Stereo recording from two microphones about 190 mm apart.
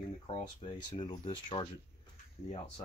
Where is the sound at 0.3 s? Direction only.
25° left (ahead or behind).